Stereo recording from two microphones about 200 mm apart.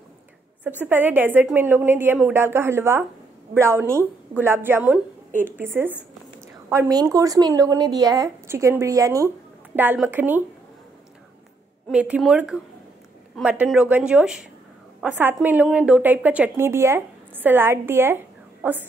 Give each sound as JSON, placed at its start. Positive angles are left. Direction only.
{"t": 0.7, "sound": "a woman's voice", "side_deg": -10}
{"t": 11.9, "sound": "a woman's voice", "side_deg": -5}